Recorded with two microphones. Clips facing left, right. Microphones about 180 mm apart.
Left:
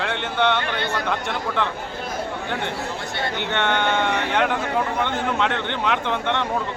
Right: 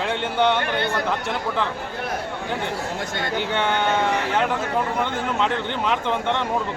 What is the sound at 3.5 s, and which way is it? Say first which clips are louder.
A man's voice: even; 5° right (ahead or behind).